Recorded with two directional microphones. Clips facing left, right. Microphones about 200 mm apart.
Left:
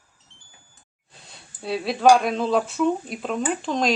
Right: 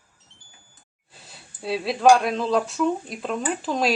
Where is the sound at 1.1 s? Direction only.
Centre (ahead or behind).